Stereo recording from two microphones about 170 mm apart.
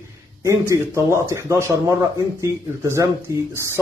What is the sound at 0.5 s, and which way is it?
A man's voice, 15° right (ahead or behind).